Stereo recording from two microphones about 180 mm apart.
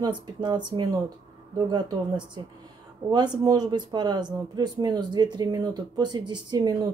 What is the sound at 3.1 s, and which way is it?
Speech, 20° right (ahead or behind).